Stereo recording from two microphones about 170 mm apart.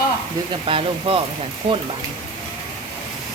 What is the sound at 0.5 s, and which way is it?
Speech, 30° right (ahead or behind).